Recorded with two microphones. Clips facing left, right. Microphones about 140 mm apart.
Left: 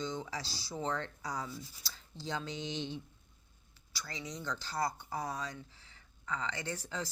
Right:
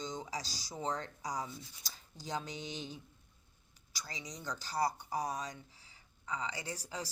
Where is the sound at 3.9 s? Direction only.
15° right (ahead or behind).